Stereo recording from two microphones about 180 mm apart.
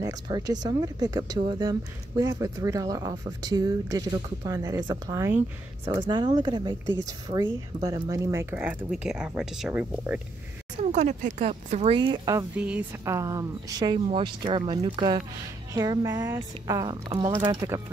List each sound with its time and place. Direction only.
0.0 s speech: 20° right (ahead or behind)
10.8 s speech: 40° right (ahead or behind)
12.0 s speech: 20° right (ahead or behind)
12.5 s speech: 5° right (ahead or behind); by 17.8 s 25° right (ahead or behind)